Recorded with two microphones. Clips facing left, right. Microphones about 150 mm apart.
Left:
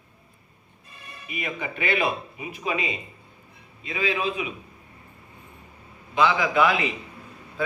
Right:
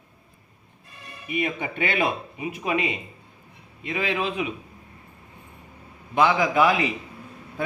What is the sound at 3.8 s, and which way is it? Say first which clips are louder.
Speech: even; 55° right (ahead or behind).